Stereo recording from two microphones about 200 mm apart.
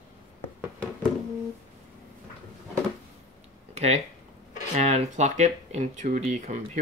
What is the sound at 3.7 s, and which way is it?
Speech, 35° right (ahead or behind).